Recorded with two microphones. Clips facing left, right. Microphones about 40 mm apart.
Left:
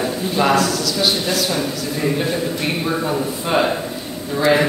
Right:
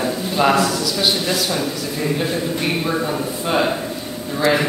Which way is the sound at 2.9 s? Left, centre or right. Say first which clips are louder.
Left 1 dB; centre.